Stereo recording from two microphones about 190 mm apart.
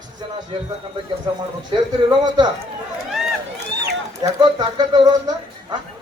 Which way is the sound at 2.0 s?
20° right (ahead or behind).